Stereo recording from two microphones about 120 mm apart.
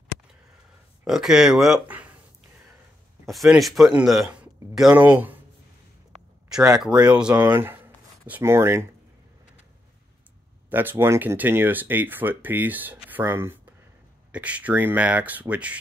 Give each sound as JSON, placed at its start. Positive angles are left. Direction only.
{"t": 1.0, "sound": "speech", "side_deg": -5}
{"t": 3.3, "sound": "speech", "side_deg": 0}
{"t": 6.8, "sound": "speech", "side_deg": -10}
{"t": 10.7, "sound": "speech", "side_deg": -15}